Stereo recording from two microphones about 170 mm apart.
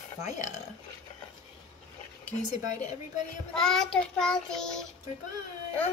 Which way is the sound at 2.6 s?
45° left (ahead or behind).